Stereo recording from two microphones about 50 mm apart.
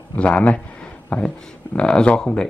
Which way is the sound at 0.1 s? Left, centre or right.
Left.